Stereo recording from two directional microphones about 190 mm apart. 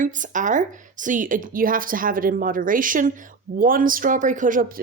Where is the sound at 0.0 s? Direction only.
40° right (ahead or behind).